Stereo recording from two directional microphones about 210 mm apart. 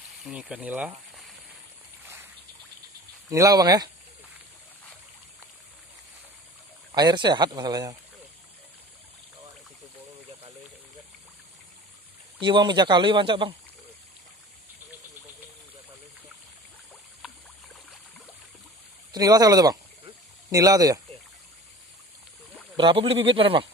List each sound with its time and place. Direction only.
0.2 s speech: 5° right (ahead or behind)
3.3 s speech: 15° right (ahead or behind)
6.9 s speech: 20° right (ahead or behind)
12.4 s speech: 25° right (ahead or behind)
19.1 s a sound: 15° right (ahead or behind)
22.8 s speech: 25° right (ahead or behind)